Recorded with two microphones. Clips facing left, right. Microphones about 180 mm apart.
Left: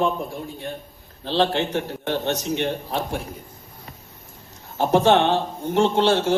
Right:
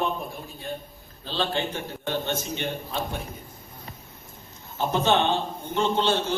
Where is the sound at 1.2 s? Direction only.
75° left (ahead or behind).